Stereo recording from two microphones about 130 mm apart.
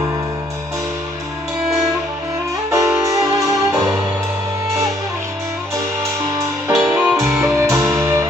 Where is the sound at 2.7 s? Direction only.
25° right (ahead or behind).